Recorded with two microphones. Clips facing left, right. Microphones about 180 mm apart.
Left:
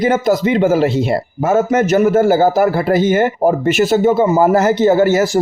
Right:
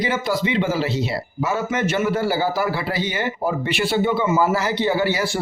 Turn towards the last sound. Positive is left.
turn(degrees=45)  # may be behind; listen again after turning